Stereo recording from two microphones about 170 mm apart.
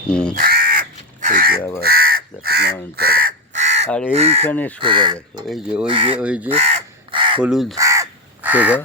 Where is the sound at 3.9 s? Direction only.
5° left (ahead or behind).